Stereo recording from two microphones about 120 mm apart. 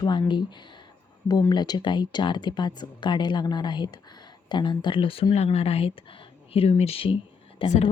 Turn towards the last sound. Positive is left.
turn(degrees=50)  # may be behind; listen again after turning